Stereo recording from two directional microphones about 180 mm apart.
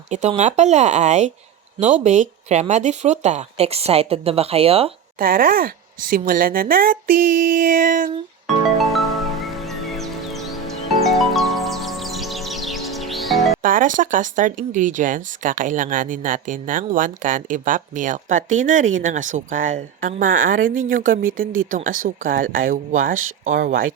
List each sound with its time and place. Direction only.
0.1 s speech: 40° right (ahead or behind)
5.2 s a woman's voice: 50° right (ahead or behind)
8.8 s music: centre (ahead or behind)
13.6 s speech: 50° right (ahead or behind)